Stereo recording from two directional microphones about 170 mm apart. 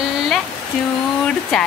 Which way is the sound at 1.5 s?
Centre (ahead or behind).